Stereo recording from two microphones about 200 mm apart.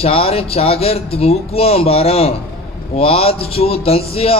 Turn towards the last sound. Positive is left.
turn(degrees=30)  # may be behind; listen again after turning